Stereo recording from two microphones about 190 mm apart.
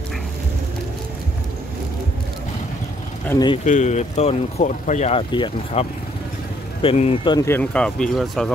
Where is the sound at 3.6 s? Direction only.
40° left (ahead or behind).